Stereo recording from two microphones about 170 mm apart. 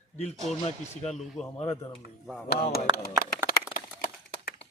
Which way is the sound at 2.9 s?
30° right (ahead or behind).